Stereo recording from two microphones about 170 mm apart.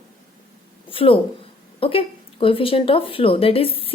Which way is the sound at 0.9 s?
30° left (ahead or behind).